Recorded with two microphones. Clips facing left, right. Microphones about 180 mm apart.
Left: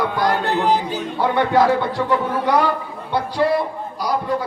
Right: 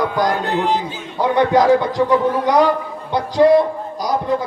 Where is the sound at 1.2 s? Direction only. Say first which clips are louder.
Right 2 dB; 15° right (ahead or behind).